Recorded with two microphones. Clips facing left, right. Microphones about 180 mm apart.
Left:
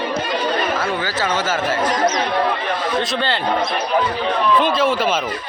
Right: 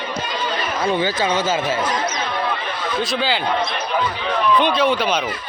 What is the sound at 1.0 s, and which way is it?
Speech, 15° right (ahead or behind).